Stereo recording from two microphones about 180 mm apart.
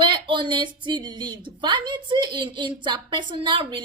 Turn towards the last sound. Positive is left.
turn(degrees=-25)  # may be behind; listen again after turning